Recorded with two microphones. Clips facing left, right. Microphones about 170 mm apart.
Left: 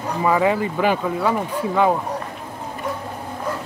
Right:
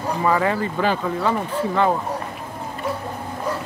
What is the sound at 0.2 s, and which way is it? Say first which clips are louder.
Speech: left 3 dB; 10° left (ahead or behind).